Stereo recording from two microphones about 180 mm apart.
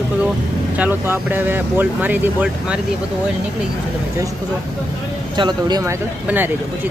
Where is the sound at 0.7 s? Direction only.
10° right (ahead or behind).